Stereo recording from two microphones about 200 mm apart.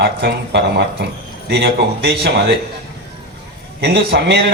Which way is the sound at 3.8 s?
60° right (ahead or behind).